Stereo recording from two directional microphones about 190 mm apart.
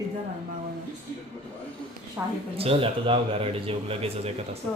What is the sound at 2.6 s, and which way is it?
A man's voice, 30° right (ahead or behind).